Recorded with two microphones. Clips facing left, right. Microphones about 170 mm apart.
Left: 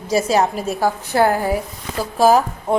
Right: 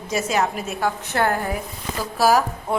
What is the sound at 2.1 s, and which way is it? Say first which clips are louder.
Speech: left 4 dB; 25° left (ahead or behind).